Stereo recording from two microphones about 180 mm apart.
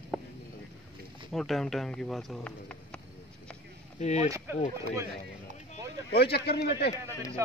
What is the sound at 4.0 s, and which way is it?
Speech, 40° left (ahead or behind).